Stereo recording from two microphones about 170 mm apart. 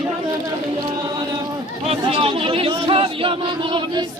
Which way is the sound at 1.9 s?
30° right (ahead or behind).